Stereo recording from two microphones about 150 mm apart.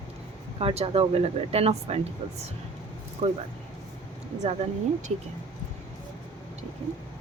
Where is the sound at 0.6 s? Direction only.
45° right (ahead or behind).